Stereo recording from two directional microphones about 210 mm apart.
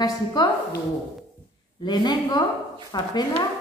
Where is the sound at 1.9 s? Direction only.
20° left (ahead or behind).